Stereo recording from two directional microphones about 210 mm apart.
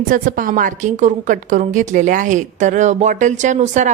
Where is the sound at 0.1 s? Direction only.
40° right (ahead or behind).